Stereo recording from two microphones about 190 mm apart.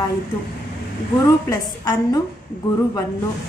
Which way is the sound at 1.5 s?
20° left (ahead or behind).